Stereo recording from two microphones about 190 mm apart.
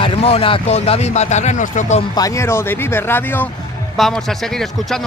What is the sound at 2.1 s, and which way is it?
Speech, 15° left (ahead or behind).